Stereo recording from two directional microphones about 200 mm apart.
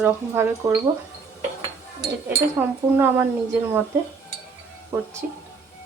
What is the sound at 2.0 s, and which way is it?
Speech, 10° right (ahead or behind).